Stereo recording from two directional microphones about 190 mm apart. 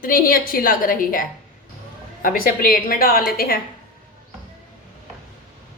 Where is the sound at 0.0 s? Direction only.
45° left (ahead or behind).